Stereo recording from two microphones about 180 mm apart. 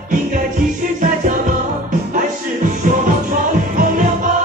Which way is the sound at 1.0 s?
50° right (ahead or behind).